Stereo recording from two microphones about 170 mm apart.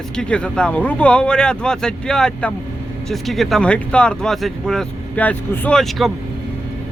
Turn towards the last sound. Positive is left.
turn(degrees=0)  # may be behind; listen again after turning